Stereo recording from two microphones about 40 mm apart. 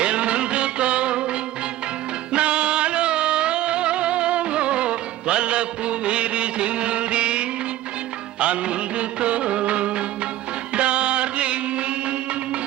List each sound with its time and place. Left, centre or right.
0.0 s music: right
8.4 s music of bollywood: right
10.8 s music: right